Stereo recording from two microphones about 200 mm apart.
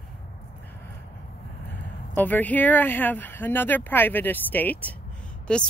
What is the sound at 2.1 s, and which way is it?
Speech, 10° left (ahead or behind).